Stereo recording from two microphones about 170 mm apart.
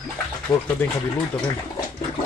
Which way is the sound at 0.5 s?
25° left (ahead or behind).